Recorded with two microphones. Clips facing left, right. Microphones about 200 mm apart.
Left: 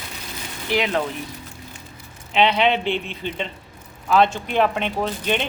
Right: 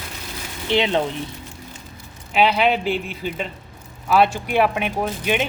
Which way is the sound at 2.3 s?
5° right (ahead or behind).